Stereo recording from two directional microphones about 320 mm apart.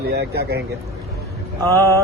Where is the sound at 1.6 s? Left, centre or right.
Centre.